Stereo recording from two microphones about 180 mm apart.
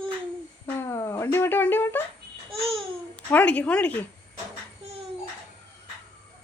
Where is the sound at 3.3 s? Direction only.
10° left (ahead or behind).